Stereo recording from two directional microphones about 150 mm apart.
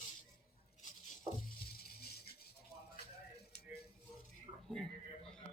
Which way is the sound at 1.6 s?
90° left.